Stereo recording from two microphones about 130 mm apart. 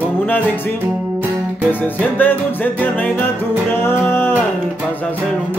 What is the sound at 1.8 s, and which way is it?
Music, 15° left (ahead or behind).